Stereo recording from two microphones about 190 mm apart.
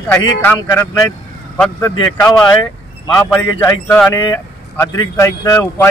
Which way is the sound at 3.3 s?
10° left (ahead or behind).